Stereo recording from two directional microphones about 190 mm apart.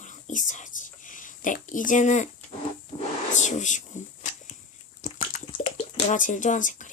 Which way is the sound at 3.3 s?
40° left (ahead or behind).